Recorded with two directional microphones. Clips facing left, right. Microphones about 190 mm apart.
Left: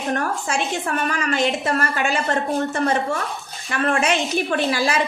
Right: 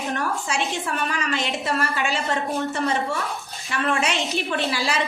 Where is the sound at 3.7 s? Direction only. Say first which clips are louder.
Left 3 dB; 50° left (ahead or behind).